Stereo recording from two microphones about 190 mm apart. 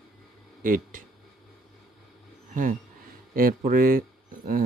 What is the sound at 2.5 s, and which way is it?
Speech, 45° right (ahead or behind).